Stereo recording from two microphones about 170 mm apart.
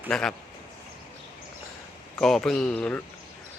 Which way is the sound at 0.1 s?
5° left (ahead or behind).